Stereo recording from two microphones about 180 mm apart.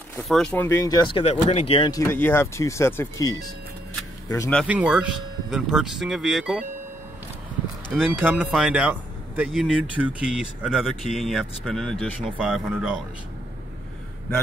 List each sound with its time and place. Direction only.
0.2 s speech: centre (ahead or behind)
4.6 s speech: 5° right (ahead or behind)
8.2 s speech: 5° right (ahead or behind)